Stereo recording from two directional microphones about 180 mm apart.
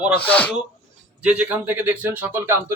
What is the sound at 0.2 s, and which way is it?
Speech, 10° left (ahead or behind).